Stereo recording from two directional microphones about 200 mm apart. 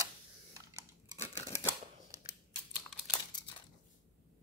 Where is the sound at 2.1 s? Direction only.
15° right (ahead or behind).